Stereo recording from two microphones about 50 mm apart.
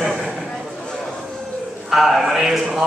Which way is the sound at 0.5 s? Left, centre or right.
Centre.